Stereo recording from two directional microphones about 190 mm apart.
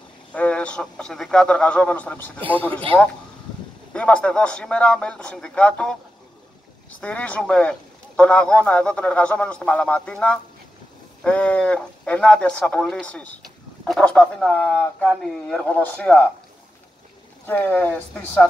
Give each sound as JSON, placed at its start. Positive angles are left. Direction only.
{"t": 0.3, "sound": "speech", "side_deg": 5}
{"t": 2.9, "sound": "speech", "side_deg": -30}
{"t": 3.9, "sound": "speech", "side_deg": 5}
{"t": 7.0, "sound": "a man's voice", "side_deg": 5}
{"t": 17.5, "sound": "a man's voice", "side_deg": 10}